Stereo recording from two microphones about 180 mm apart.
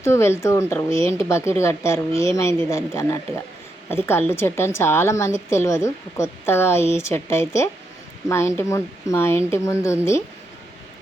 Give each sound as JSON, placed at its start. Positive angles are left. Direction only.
{"t": 0.0, "sound": "a woman's voice", "side_deg": 15}